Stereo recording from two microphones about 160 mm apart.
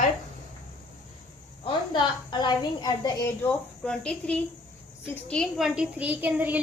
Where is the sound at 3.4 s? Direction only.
5° left (ahead or behind).